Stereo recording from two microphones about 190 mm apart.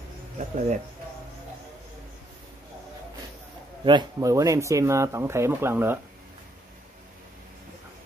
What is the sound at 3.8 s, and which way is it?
Speech, 20° right (ahead or behind).